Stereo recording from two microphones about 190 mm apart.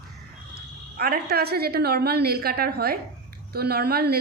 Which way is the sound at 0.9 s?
55° right (ahead or behind).